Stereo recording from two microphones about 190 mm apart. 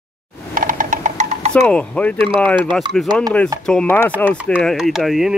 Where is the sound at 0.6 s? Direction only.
45° right (ahead or behind).